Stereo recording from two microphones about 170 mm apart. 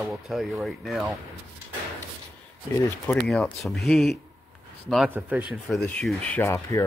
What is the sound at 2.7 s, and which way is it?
Speech, 15° left (ahead or behind).